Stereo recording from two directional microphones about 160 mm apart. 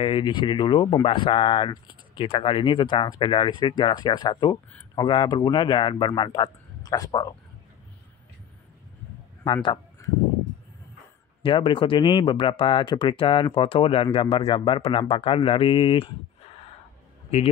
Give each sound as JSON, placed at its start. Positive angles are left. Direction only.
{"t": 0.0, "sound": "speech", "side_deg": 30}
{"t": 9.4, "sound": "speech", "side_deg": 30}
{"t": 11.4, "sound": "speech", "side_deg": 35}